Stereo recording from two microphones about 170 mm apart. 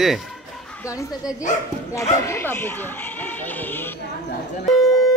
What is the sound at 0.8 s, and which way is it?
A woman's voice, 20° left (ahead or behind).